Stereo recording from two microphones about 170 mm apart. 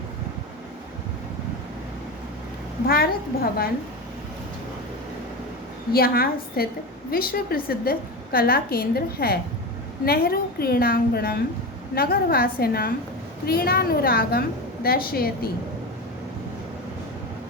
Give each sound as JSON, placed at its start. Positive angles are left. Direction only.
{"t": 2.8, "sound": "a woman's voice", "side_deg": 60}
{"t": 5.9, "sound": "a woman's voice", "side_deg": 60}